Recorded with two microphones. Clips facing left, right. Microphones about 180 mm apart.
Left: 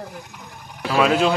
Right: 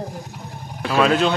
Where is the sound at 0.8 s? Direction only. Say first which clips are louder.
Even; 5° left (ahead or behind).